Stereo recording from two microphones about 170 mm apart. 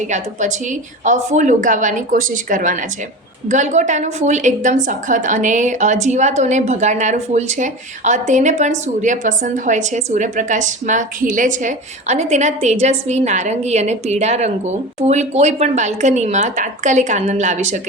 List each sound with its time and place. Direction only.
0.1 s a woman's voice: 45° right (ahead or behind)